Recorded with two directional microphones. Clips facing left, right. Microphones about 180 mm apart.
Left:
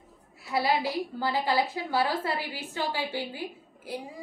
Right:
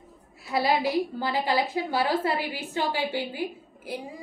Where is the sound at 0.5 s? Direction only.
20° right (ahead or behind).